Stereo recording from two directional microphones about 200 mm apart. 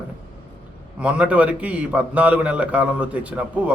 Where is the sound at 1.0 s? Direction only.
5° right (ahead or behind).